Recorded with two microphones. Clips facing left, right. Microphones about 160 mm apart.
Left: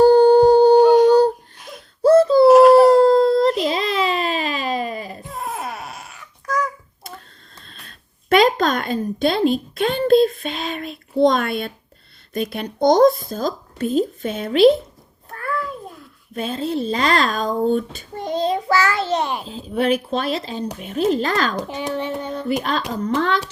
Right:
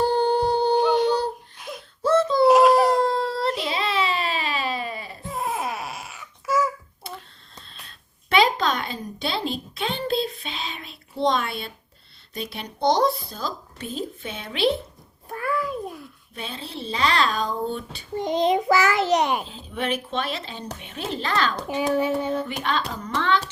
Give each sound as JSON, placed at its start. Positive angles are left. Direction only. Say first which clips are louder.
{"t": 0.0, "sound": "a sound", "louder": "left 11 dB", "side_deg": 40}
{"t": 2.5, "sound": "baby cry", "louder": "left 7 dB", "side_deg": 0}
{"t": 2.9, "sound": "dog", "louder": "left 10 dB", "side_deg": 40}
{"t": 3.6, "sound": "baby cry", "louder": "left 5 dB", "side_deg": 35}
{"t": 5.3, "sound": "babbling", "louder": "right 2 dB", "side_deg": 0}
{"t": 7.6, "sound": "a sound", "louder": "left 2 dB", "side_deg": 50}
{"t": 12.3, "sound": "speech", "louder": "left 9 dB", "side_deg": 50}
{"t": 15.3, "sound": "a sound", "louder": "even", "side_deg": -15}
{"t": 16.3, "sound": "speech", "louder": "left 12 dB", "side_deg": 45}
{"t": 18.2, "sound": "a child's voice", "louder": "even", "side_deg": -20}
{"t": 19.5, "sound": "speech", "louder": "left 8 dB", "side_deg": 40}
{"t": 21.9, "sound": "hands", "louder": "right 3 dB", "side_deg": -10}
{"t": 22.4, "sound": "speech", "louder": "left 5 dB", "side_deg": 40}